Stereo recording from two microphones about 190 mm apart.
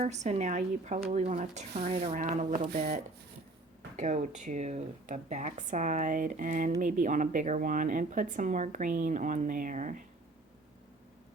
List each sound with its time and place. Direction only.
0.0 s speech: 35° right (ahead or behind)
3.9 s speech: 40° right (ahead or behind)